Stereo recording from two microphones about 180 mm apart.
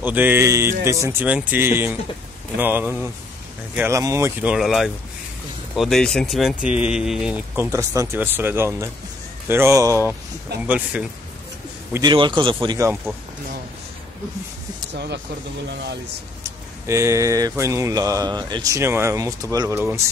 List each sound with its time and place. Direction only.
0.0 s speech: 10° right (ahead or behind)
11.9 s a man's voice: 25° right (ahead or behind)
15.7 s speech: 70° right (ahead or behind)
16.4 s speech: 15° right (ahead or behind)